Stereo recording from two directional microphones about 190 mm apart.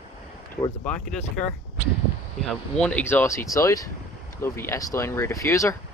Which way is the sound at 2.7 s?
5° left (ahead or behind).